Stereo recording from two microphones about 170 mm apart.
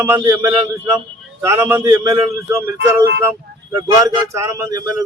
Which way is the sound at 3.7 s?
20° right (ahead or behind).